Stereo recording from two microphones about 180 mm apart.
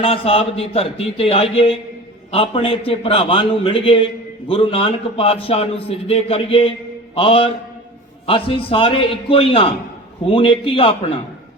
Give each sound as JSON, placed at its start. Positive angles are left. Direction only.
{"t": 0.0, "sound": "a man's voice", "side_deg": 30}